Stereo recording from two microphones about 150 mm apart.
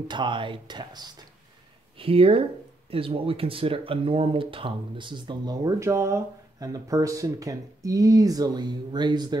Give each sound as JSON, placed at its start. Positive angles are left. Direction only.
{"t": 0.1, "sound": "speech", "side_deg": -30}
{"t": 2.0, "sound": "speech", "side_deg": -40}